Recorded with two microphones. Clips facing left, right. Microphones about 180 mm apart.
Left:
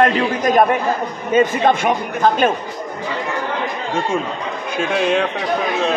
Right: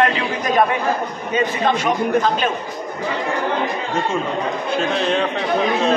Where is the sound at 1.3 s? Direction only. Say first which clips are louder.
Left 4 dB; 50° left (ahead or behind).